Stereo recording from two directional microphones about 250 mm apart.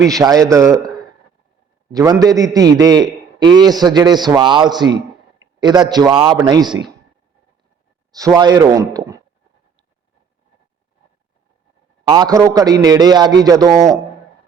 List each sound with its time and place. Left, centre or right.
0.2 s a man's voice: centre
1.9 s a man's voice: centre
8.1 s speech: centre
12.0 s a man's voice: centre